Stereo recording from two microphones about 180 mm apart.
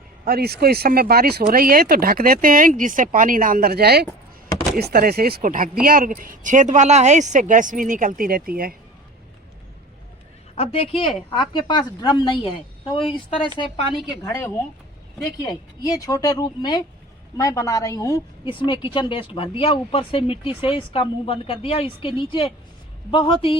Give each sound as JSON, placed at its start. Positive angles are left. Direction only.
{"t": 0.3, "sound": "speech", "side_deg": -60}
{"t": 10.5, "sound": "a man's voice", "side_deg": 35}
{"t": 14.2, "sound": "a woman's voice", "side_deg": 15}